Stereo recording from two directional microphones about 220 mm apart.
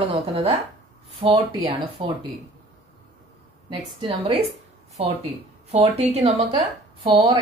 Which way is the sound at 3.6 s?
25° right (ahead or behind).